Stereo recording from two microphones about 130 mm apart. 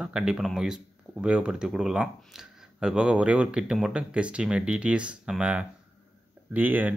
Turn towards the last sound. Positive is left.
turn(degrees=-15)  # may be behind; listen again after turning